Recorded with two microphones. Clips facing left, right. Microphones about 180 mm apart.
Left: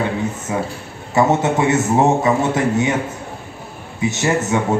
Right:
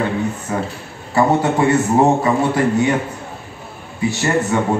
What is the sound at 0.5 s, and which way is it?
A man's voice, 15° left (ahead or behind).